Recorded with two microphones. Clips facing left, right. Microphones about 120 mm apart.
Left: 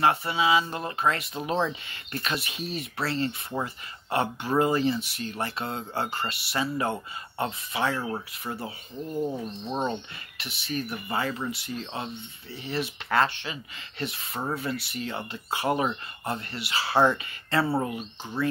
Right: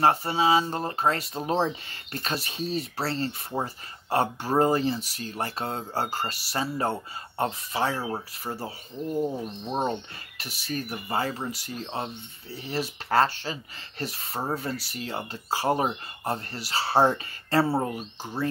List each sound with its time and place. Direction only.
0.0 s speech: 35° right (ahead or behind)
9.1 s bird: 15° right (ahead or behind)
9.7 s speech: 45° right (ahead or behind)